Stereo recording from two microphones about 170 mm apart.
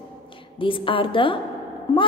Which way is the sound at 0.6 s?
30° left (ahead or behind).